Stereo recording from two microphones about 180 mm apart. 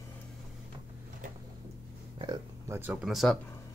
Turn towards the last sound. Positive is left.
turn(degrees=0)  # may be behind; listen again after turning